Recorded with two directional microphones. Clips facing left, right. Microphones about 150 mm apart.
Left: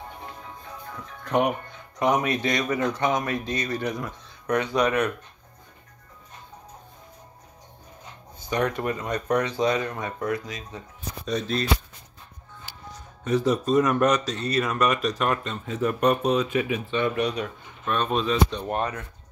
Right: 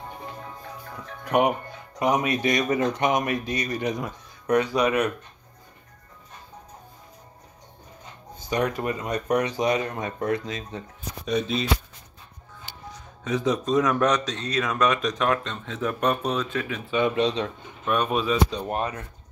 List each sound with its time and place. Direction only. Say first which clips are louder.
1.2 s speech: right 2 dB; 15° right (ahead or behind)
8.5 s speech: even; 15° right (ahead or behind)
11.2 s speech: right 2 dB; 5° right (ahead or behind)
13.2 s speech: left 2 dB; centre (ahead or behind)
16.9 s speech: right 4 dB; 20° right (ahead or behind)
17.8 s speech: right 1 dB; 10° right (ahead or behind)